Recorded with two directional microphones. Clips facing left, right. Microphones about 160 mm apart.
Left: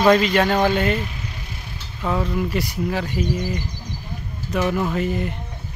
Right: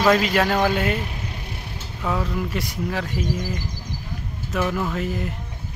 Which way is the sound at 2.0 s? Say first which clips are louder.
Left 3 dB; centre (ahead or behind).